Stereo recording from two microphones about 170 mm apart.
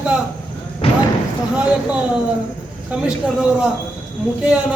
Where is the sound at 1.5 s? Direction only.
5° right (ahead or behind).